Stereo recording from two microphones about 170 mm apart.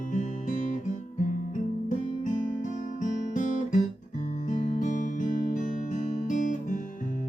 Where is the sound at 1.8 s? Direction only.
45° left (ahead or behind).